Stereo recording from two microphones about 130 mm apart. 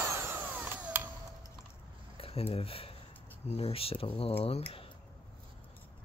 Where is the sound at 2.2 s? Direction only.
50° left (ahead or behind).